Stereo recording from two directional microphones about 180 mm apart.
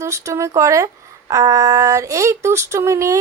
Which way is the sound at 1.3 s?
20° right (ahead or behind).